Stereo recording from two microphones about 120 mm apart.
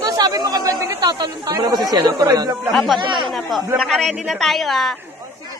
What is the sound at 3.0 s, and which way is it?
Speech, 40° right (ahead or behind).